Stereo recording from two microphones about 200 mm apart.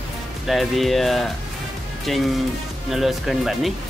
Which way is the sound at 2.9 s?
Centre (ahead or behind).